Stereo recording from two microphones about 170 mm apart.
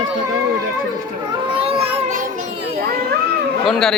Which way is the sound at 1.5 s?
35° right (ahead or behind).